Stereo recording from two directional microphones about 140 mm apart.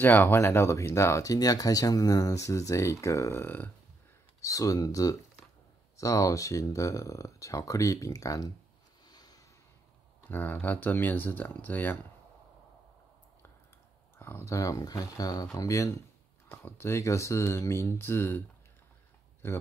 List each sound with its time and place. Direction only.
0.0 s speech: 15° left (ahead or behind)
4.4 s speech: 25° left (ahead or behind)
9.0 s a sound: 30° left (ahead or behind)
10.2 s speech: 15° left (ahead or behind)
14.1 s speech: 15° left (ahead or behind)
19.4 s speech: 15° left (ahead or behind)